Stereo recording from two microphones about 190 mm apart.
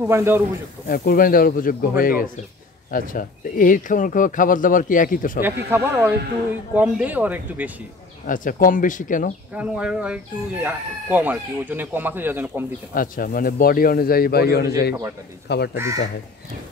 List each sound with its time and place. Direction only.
0.0 s speech: 15° right (ahead or behind)
0.8 s speech: 50° left (ahead or behind)
5.7 s speech: 10° right (ahead or behind)
8.3 s speech: 45° left (ahead or behind)
9.6 s speech: 5° right (ahead or behind)
12.9 s speech: 50° left (ahead or behind)